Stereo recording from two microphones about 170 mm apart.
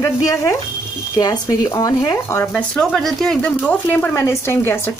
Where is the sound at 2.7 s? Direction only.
Centre (ahead or behind).